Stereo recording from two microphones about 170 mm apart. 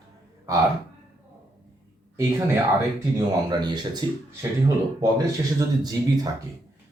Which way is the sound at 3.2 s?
25° right (ahead or behind).